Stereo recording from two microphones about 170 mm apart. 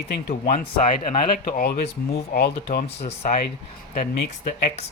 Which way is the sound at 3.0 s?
45° left (ahead or behind).